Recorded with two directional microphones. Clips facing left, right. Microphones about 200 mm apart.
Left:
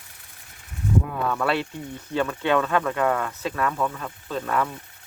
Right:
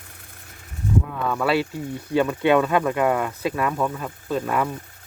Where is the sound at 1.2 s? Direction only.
5° right (ahead or behind).